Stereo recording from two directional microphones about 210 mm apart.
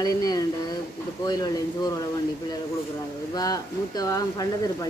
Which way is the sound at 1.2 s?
20° left (ahead or behind).